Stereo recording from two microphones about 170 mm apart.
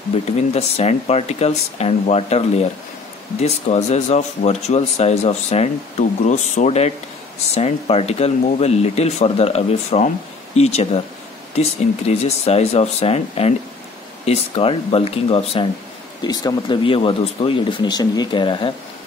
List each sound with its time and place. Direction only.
0.5 s speech: 40° left (ahead or behind)